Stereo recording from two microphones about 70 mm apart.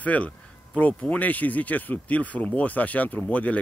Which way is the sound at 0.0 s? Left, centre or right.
Left.